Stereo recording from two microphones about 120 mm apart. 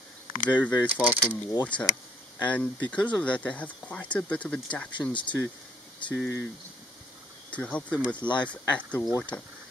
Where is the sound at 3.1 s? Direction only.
10° left (ahead or behind).